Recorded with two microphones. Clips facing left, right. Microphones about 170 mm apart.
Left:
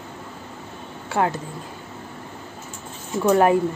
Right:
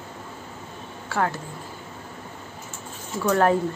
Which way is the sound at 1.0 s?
20° left (ahead or behind).